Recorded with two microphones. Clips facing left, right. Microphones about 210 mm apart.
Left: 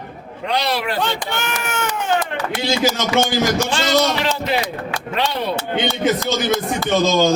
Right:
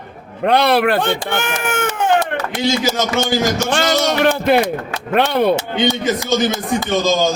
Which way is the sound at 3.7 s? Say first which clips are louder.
Right 1 dB; 55° right (ahead or behind).